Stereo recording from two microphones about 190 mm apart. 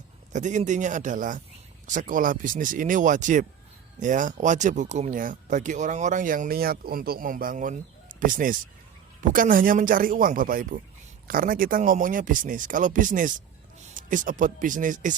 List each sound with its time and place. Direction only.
0.3 s speech: 40° right (ahead or behind)